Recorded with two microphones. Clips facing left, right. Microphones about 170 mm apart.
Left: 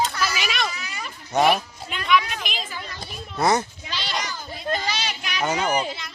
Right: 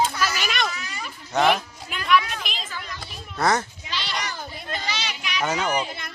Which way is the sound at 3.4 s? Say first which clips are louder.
Left 2 dB; 15° left (ahead or behind).